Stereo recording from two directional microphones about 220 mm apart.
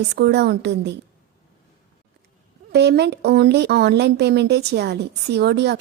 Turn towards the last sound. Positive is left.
turn(degrees=-50)  # may be behind; listen again after turning